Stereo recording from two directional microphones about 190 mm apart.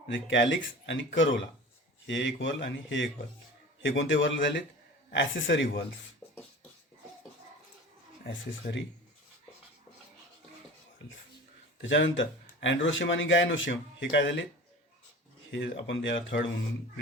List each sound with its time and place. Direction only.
0.1 s speech: 70° left (ahead or behind)
8.6 s speech: 40° left (ahead or behind)
11.8 s a man's voice: 80° left
15.5 s speech: 70° left (ahead or behind)